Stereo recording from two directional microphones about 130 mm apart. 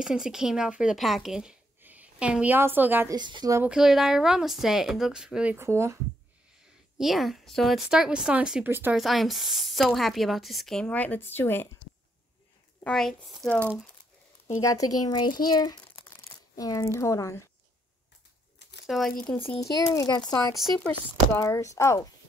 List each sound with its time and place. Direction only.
0.0 s speech: 5° right (ahead or behind)
3.1 s speech: 35° right (ahead or behind)
3.6 s a woman's voice: 5° right (ahead or behind)
5.6 s speech: 20° right (ahead or behind)
7.0 s a woman's voice: centre (ahead or behind)
8.6 s speech: 15° right (ahead or behind)
8.9 s a woman's voice: centre (ahead or behind); by 11.7 s 15° left (ahead or behind)
12.8 s a woman's voice: 5° left (ahead or behind)
14.6 s speech: 25° left (ahead or behind)
18.9 s a woman's voice: centre (ahead or behind)
19.6 s speech: 25° left (ahead or behind)